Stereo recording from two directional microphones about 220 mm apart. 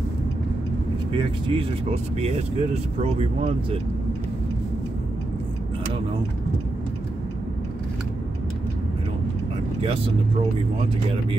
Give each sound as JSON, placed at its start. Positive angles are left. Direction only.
{"t": 1.1, "sound": "speech", "side_deg": -25}